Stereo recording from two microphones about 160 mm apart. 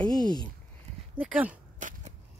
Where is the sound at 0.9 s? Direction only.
45° right (ahead or behind).